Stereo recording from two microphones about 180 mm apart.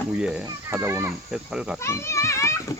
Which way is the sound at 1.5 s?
5° right (ahead or behind).